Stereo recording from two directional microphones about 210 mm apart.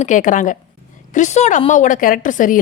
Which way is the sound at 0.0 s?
40° left (ahead or behind).